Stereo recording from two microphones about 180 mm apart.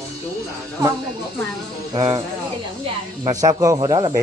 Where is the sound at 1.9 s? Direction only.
20° right (ahead or behind).